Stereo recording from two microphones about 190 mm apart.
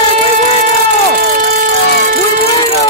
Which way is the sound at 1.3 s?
45° right (ahead or behind).